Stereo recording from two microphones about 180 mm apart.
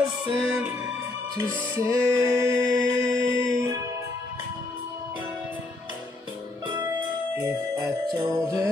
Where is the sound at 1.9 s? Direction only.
15° right (ahead or behind).